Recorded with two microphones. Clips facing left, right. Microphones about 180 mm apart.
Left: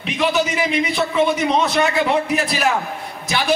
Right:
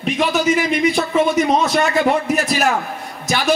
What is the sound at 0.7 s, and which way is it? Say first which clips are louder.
A man's voice: right 3 dB; 45° right (ahead or behind).